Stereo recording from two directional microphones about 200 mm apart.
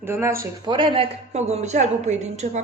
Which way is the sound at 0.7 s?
25° right (ahead or behind).